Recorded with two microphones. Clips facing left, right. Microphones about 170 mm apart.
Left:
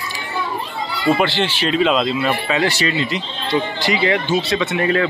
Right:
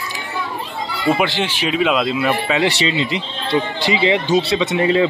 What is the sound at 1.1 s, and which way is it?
Speech, 10° right (ahead or behind).